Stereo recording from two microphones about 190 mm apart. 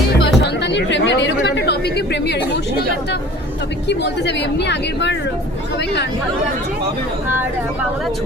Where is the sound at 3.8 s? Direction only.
65° left (ahead or behind).